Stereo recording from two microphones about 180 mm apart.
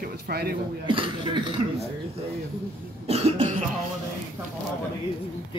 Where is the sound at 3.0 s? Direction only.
35° right (ahead or behind).